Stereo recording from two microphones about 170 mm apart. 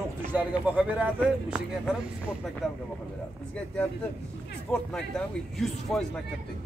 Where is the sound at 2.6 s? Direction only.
Centre (ahead or behind).